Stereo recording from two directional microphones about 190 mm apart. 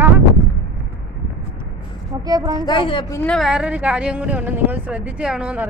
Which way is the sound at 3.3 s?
Centre (ahead or behind).